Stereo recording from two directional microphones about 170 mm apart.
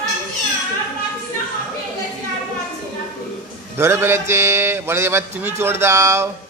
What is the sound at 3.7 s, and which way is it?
A man's voice, 15° right (ahead or behind).